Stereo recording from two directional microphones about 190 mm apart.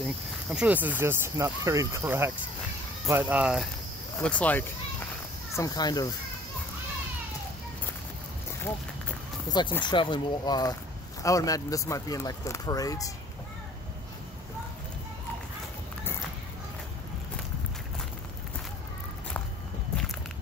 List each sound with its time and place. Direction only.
0.5 s speech: 10° right (ahead or behind)
4.2 s speech: 5° left (ahead or behind)
5.6 s speech: 20° left (ahead or behind)
9.5 s speech: 25° left (ahead or behind)